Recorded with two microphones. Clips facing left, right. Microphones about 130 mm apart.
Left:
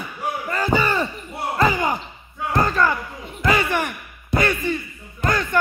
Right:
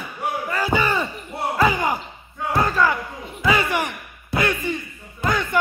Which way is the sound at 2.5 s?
5° right (ahead or behind).